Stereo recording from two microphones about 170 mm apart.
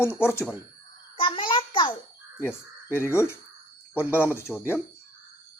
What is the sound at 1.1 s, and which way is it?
Speech, 30° left (ahead or behind).